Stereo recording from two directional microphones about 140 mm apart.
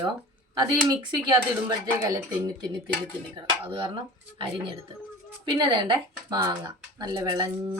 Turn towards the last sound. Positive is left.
turn(degrees=-25)  # may be behind; listen again after turning